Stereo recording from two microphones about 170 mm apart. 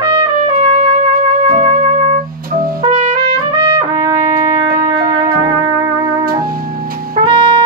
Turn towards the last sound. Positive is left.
turn(degrees=-25)  # may be behind; listen again after turning